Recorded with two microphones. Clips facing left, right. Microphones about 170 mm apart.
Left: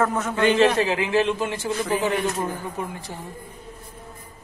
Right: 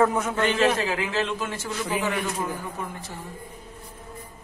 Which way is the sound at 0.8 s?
15° left (ahead or behind).